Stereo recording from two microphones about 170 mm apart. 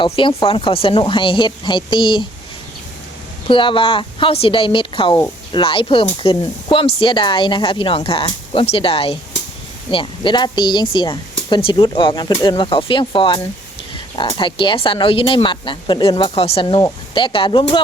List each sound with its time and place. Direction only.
0.0 s a woman's voice: 30° left (ahead or behind)
3.4 s a woman's voice: 30° left (ahead or behind)